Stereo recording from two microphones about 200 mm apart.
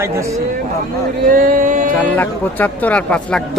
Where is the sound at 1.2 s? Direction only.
40° right (ahead or behind).